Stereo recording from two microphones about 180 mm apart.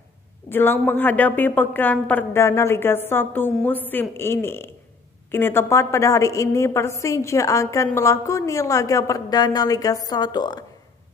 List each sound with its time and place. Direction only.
0.5 s a woman's voice: 10° left (ahead or behind)